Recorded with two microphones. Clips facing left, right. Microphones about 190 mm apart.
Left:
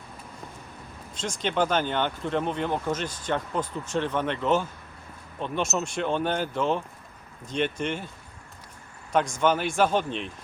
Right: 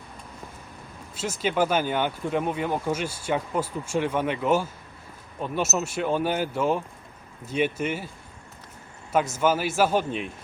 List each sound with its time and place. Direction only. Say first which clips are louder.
1.1 s speech: right 2 dB; 5° right (ahead or behind)
9.1 s speech: right 1 dB; 5° right (ahead or behind)